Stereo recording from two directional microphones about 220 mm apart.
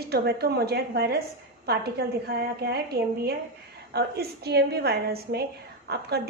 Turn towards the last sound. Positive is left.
turn(degrees=-45)  # may be behind; listen again after turning